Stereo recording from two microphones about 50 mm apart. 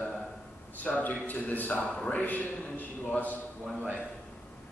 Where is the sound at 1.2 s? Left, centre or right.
Left.